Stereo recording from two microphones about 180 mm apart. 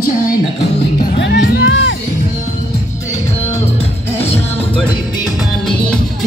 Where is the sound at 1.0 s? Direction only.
75° left (ahead or behind).